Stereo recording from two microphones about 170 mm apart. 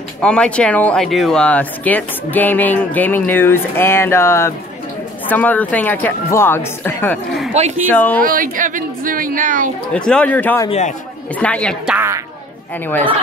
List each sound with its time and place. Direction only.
0.2 s speech: 5° left (ahead or behind)
7.5 s speech: 40° right (ahead or behind)
7.9 s speech: 10° left (ahead or behind)
8.2 s a woman's voice: 55° right (ahead or behind)
9.9 s speech: 5° left (ahead or behind)
11.8 s a woman's voice: 5° right (ahead or behind)
12.8 s speech: 10° left (ahead or behind)